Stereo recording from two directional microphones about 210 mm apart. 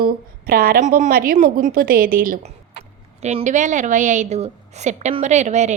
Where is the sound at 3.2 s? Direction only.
30° right (ahead or behind).